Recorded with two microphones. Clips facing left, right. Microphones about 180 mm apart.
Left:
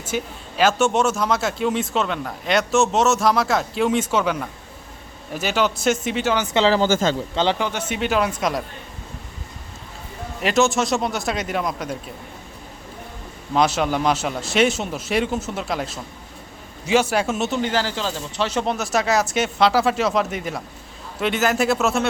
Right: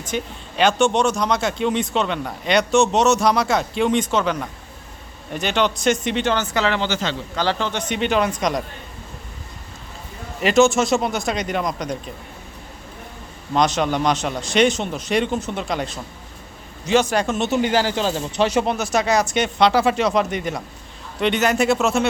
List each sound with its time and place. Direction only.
0.0 s speech: 5° left (ahead or behind)
6.5 s speech: 25° left (ahead or behind)
6.7 s speech: 45° left (ahead or behind)
7.3 s speech: 20° left (ahead or behind)
7.7 s speech: 5° left (ahead or behind)
10.4 s speech: centre (ahead or behind)
13.5 s a man's voice: 5° left (ahead or behind)
17.5 s speech: 15° right (ahead or behind)
18.6 s speech: centre (ahead or behind)